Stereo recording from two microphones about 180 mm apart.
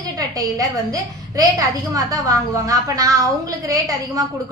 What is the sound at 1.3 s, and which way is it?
A woman's voice, 20° right (ahead or behind).